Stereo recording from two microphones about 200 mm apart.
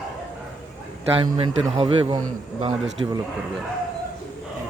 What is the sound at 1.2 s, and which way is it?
Speech, 25° right (ahead or behind).